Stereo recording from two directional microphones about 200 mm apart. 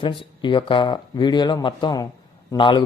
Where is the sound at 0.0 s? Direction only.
25° left (ahead or behind).